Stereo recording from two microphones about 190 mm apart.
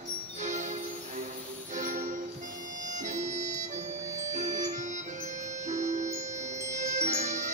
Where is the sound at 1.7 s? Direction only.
40° right (ahead or behind).